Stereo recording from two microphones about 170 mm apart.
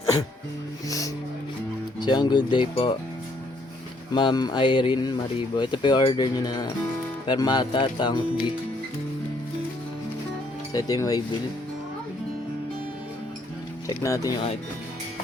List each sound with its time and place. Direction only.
0.9 s speech: 20° left (ahead or behind)
4.1 s speech: 30° left (ahead or behind)
10.7 s speech: 20° left (ahead or behind)
13.8 s speech: 20° left (ahead or behind)